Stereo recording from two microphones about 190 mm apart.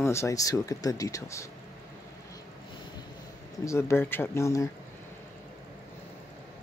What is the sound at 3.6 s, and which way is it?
Speech, 15° left (ahead or behind).